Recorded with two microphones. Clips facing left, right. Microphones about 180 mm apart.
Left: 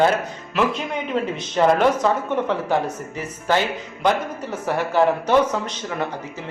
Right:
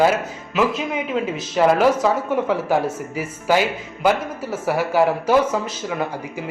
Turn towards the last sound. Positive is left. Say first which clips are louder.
# right 2 dB
turn(degrees=-5)  # may be behind; listen again after turning